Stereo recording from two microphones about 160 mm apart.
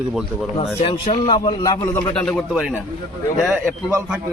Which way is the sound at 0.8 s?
35° left (ahead or behind).